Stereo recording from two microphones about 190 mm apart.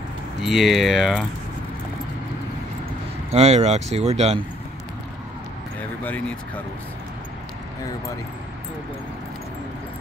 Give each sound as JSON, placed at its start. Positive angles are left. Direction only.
{"t": 0.4, "sound": "speech", "side_deg": 0}
{"t": 3.3, "sound": "speech", "side_deg": -35}
{"t": 6.0, "sound": "speech", "side_deg": 10}